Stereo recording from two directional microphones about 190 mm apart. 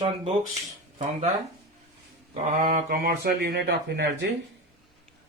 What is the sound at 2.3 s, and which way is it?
Speech, 45° right (ahead or behind).